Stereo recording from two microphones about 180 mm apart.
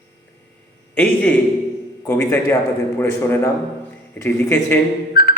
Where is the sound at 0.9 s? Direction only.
10° left (ahead or behind).